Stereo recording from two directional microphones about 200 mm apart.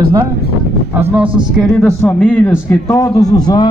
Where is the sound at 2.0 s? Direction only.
5° left (ahead or behind).